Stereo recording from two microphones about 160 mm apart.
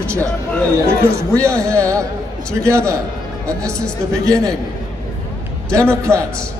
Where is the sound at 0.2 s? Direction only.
10° left (ahead or behind).